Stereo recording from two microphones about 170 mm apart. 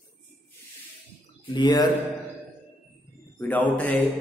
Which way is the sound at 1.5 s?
25° left (ahead or behind).